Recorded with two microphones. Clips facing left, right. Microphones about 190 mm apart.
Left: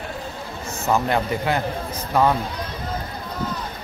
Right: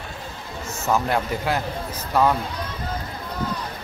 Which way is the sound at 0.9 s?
Centre (ahead or behind).